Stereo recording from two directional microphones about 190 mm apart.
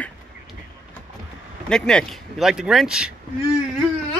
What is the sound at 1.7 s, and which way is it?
Speech, 5° left (ahead or behind).